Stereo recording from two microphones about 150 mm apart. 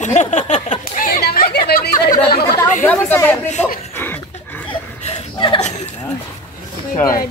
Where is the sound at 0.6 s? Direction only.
65° left (ahead or behind); by 2.4 s 85° left.